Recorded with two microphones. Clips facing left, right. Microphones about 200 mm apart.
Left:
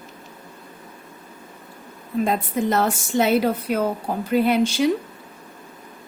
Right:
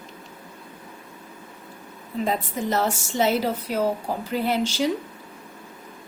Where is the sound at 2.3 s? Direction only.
55° left (ahead or behind).